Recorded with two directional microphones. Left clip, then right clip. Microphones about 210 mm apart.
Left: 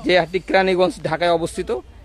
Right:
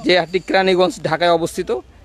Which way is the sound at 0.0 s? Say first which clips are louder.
Right 1 dB; 15° right (ahead or behind).